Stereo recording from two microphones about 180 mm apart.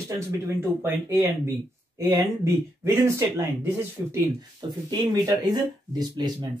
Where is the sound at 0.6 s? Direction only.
15° right (ahead or behind).